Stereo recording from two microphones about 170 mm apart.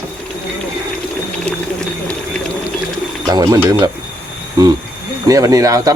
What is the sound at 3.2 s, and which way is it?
Speech, 20° right (ahead or behind).